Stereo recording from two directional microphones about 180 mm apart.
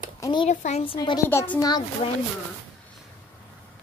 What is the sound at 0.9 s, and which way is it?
Speech, 20° left (ahead or behind).